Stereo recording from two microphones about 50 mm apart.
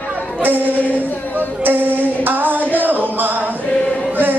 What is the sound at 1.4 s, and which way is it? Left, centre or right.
Music, right.